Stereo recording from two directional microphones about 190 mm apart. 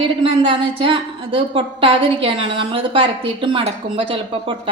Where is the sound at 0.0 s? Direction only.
30° right (ahead or behind).